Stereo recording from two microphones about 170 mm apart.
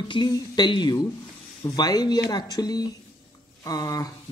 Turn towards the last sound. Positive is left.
turn(degrees=20)  # may be behind; listen again after turning